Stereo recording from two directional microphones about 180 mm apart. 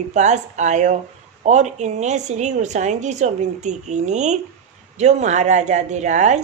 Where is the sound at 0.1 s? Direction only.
40° right (ahead or behind).